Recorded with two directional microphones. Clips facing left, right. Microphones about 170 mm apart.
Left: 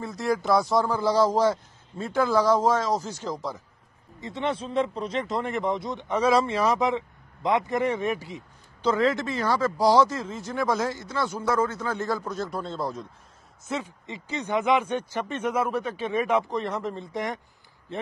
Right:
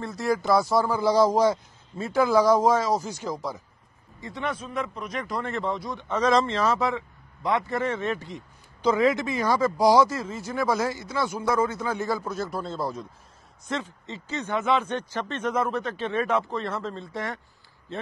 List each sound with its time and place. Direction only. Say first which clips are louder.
0.0 s speech: right 1 dB; centre (ahead or behind)
4.2 s speech: left 3 dB; 25° left (ahead or behind); by 8.5 s 5° left (ahead or behind)
8.8 s speech: right 1 dB; 10° right (ahead or behind)
13.7 s speech: even; 10° left (ahead or behind)